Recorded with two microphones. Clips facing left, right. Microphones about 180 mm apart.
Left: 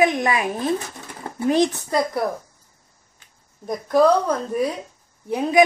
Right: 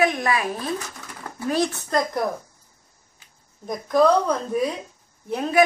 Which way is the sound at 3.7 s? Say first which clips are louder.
Left 2 dB; 5° left (ahead or behind).